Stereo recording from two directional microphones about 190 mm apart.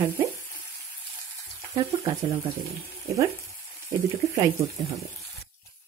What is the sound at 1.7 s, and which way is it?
Speech, 15° right (ahead or behind).